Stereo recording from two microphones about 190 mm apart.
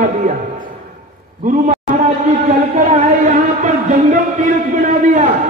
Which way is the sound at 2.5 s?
40° right (ahead or behind).